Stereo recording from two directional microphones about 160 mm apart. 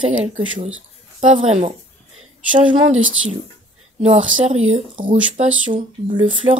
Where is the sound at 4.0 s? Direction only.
40° right (ahead or behind).